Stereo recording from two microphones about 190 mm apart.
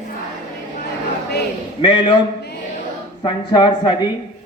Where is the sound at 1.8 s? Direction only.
25° left (ahead or behind).